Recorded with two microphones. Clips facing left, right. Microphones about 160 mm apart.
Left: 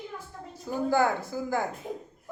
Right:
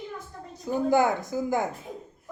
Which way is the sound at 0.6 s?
20° right (ahead or behind).